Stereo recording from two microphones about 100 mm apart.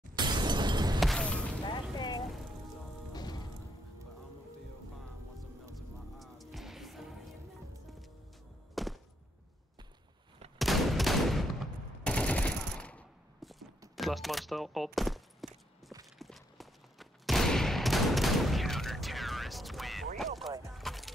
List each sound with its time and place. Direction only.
0.1 s shatter: 45° right (ahead or behind)
0.9 s a sound: 5° left (ahead or behind)
1.6 s vehicle: 50° left (ahead or behind)
3.1 s music: 45° left (ahead or behind)
5.8 s music: centre (ahead or behind)
8.7 s a sound: centre (ahead or behind)
10.6 s fusillade: centre (ahead or behind)
12.0 s gunshot: 10° left (ahead or behind)
13.4 s a sound: centre (ahead or behind)
13.9 s speech: centre (ahead or behind)
16.2 s fusillade: centre (ahead or behind)
20.7 s a sound: centre (ahead or behind)